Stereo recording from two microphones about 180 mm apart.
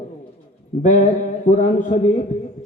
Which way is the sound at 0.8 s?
45° left (ahead or behind).